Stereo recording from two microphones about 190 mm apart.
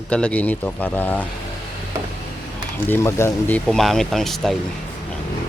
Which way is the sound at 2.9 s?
15° left (ahead or behind).